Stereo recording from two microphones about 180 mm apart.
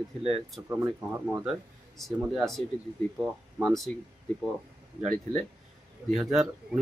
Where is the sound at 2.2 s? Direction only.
Centre (ahead or behind).